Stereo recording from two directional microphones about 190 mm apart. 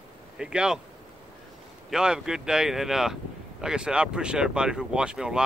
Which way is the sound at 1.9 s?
5° right (ahead or behind).